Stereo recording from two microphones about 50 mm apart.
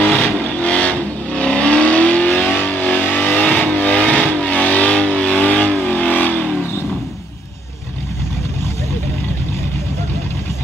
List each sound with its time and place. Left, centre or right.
0.0 s vehicle: centre